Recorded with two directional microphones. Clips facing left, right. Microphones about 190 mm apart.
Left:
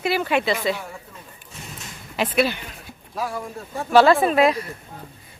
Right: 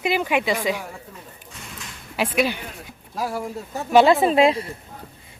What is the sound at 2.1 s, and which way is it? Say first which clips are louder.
Speech: left 1 dB; 10° right (ahead or behind).